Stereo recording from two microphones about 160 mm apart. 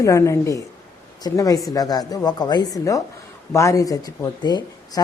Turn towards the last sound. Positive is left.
turn(degrees=25)  # may be behind; listen again after turning